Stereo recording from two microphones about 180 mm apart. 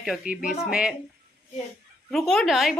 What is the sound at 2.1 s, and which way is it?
Speech, centre (ahead or behind).